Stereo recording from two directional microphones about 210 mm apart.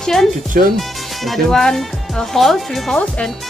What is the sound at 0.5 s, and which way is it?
Speech, 40° right (ahead or behind).